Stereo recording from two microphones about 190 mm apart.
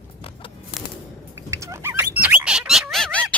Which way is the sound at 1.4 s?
15° right (ahead or behind).